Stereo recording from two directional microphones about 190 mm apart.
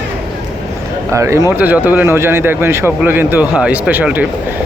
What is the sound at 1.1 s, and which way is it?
Speech, 15° right (ahead or behind).